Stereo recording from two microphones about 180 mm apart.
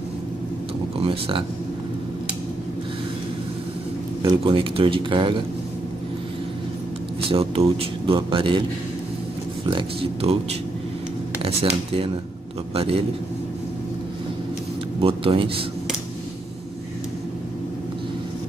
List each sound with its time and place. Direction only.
4.2 s speech: 30° right (ahead or behind)
7.2 s speech: 30° right (ahead or behind)
9.7 s speech: 25° right (ahead or behind)
12.7 s speech: 30° right (ahead or behind)
15.0 s speech: 30° right (ahead or behind)